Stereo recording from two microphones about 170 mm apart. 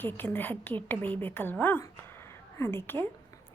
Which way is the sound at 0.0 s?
10° left (ahead or behind).